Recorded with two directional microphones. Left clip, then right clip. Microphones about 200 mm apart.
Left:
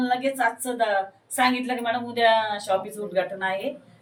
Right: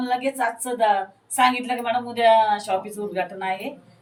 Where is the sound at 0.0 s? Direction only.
10° left (ahead or behind).